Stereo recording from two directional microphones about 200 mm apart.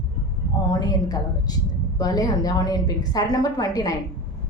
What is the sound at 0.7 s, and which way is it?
A woman's voice, 20° left (ahead or behind).